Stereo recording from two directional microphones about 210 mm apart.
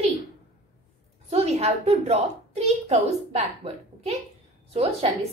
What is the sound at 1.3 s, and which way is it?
A woman's voice, 30° right (ahead or behind).